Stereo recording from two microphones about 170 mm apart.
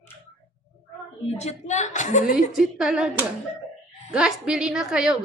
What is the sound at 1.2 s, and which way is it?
A woman's voice, 40° left (ahead or behind).